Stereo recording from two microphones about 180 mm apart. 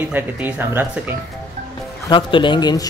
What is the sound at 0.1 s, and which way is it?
Speech, 10° right (ahead or behind).